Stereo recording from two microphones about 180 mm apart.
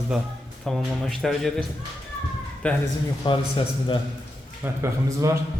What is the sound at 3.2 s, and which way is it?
Speech, 25° left (ahead or behind).